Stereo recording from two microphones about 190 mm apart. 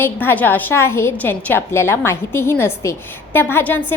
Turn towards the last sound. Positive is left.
turn(degrees=10)  # may be behind; listen again after turning